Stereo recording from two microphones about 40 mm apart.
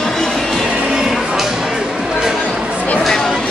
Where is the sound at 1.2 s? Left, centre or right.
Centre.